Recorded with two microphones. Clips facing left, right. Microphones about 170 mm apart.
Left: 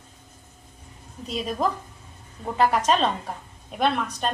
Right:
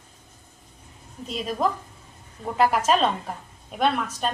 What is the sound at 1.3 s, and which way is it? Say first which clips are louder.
A woman's voice: even; centre (ahead or behind).